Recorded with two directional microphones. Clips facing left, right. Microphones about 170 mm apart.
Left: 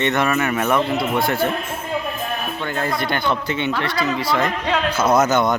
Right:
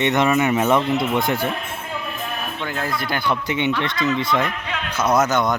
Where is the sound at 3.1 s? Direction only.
15° right (ahead or behind).